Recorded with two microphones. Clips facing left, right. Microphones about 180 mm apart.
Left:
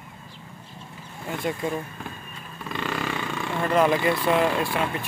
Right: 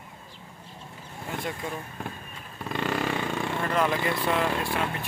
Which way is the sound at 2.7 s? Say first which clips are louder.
Right 1 dB; 45° right (ahead or behind).